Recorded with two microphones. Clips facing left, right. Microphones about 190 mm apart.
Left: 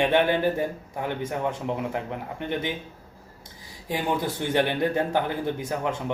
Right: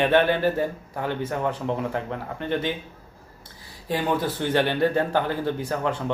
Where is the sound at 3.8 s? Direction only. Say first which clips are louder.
Right 2 dB; 15° left (ahead or behind).